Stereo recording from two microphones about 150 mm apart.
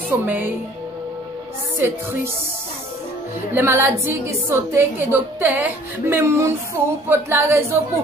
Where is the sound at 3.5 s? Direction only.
15° right (ahead or behind).